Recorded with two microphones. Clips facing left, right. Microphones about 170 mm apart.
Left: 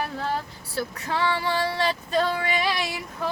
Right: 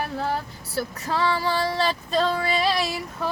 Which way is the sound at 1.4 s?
35° right (ahead or behind).